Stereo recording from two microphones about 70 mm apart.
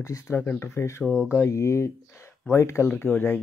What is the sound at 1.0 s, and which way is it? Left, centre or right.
Speech, centre.